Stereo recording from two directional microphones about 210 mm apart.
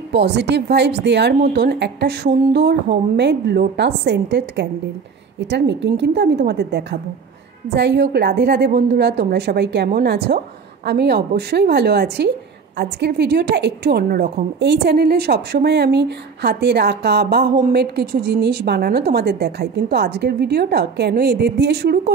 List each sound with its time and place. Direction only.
0.1 s a woman's voice: 55° right (ahead or behind)